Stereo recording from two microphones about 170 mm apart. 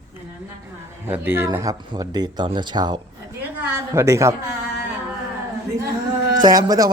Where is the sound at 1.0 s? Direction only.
10° right (ahead or behind).